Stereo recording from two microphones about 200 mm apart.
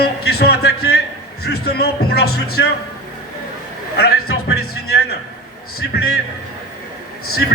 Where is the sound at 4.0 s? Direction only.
50° left (ahead or behind).